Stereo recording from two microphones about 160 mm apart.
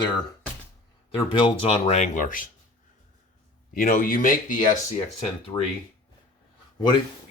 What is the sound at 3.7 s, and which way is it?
Speech, 60° left (ahead or behind).